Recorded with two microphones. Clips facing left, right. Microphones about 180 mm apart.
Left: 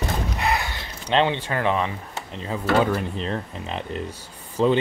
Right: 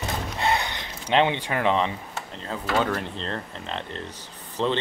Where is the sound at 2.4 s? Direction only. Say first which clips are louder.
Left 4 dB; 10° left (ahead or behind).